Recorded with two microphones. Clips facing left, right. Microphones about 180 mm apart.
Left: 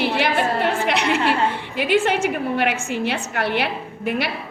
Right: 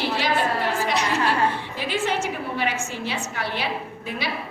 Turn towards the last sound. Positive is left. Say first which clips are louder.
# left 7 dB
turn(degrees=65)  # may be behind; listen again after turning